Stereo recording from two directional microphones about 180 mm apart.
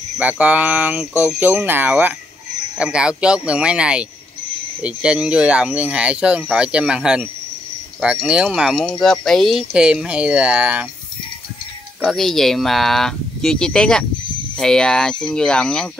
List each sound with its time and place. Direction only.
0.2 s speech: 10° right (ahead or behind)
12.0 s speech: centre (ahead or behind)